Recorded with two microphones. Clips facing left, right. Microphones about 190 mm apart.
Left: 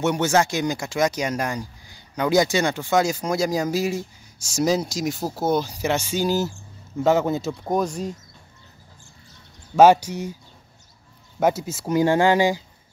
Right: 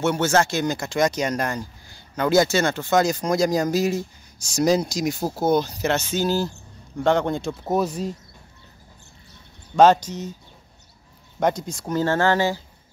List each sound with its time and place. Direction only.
0.0 s speech: 15° left (ahead or behind); by 8.1 s 5° right (ahead or behind)
9.8 s speech: 10° left (ahead or behind)
11.3 s speech: 5° left (ahead or behind)